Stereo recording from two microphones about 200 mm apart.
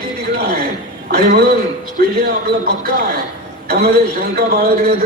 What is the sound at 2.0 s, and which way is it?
Speech, 50° right (ahead or behind).